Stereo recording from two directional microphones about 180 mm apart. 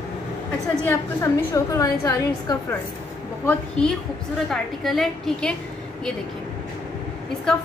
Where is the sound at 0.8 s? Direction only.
15° left (ahead or behind).